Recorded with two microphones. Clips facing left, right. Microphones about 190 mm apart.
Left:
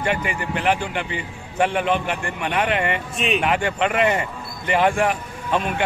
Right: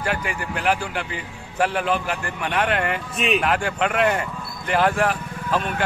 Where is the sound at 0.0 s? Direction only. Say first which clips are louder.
Left 2 dB; centre (ahead or behind).